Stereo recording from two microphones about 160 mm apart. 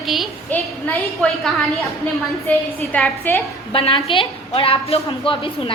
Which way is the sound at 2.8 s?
Centre (ahead or behind).